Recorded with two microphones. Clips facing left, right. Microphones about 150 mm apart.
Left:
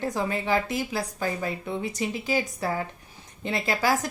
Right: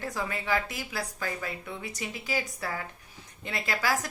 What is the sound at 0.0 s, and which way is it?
A woman's voice, 25° left (ahead or behind).